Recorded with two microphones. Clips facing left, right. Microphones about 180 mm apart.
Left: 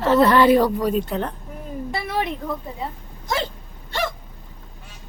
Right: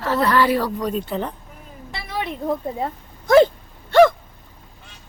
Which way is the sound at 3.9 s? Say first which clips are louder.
Right 14 dB; 55° right (ahead or behind).